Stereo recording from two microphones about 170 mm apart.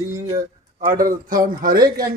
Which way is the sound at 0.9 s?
55° right (ahead or behind).